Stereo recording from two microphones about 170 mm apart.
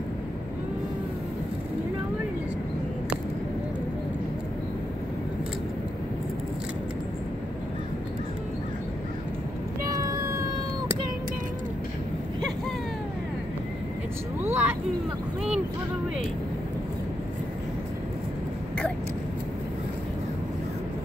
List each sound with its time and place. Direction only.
9.8 s meow: 20° right (ahead or behind)
14.4 s vehicle: 10° right (ahead or behind)